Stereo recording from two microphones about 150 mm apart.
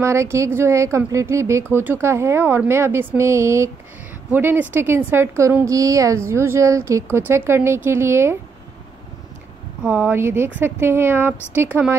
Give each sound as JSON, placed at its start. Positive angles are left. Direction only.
{"t": 0.0, "sound": "speech", "side_deg": -20}
{"t": 9.8, "sound": "speech", "side_deg": -10}